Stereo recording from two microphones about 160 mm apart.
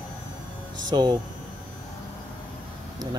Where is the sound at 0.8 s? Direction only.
25° right (ahead or behind).